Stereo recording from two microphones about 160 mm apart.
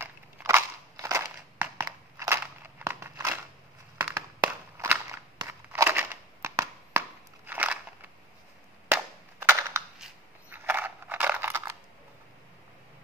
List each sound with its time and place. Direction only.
0.0 s crushing: 15° right (ahead or behind)
4.0 s walk: 15° right (ahead or behind)
8.8 s crushing: 15° right (ahead or behind)
10.5 s a sound: 10° right (ahead or behind)